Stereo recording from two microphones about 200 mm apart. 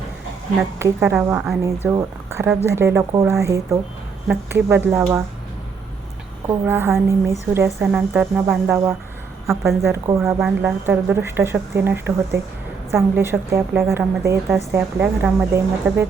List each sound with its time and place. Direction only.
0.8 s speech: 10° right (ahead or behind)
6.7 s speech: 10° right (ahead or behind)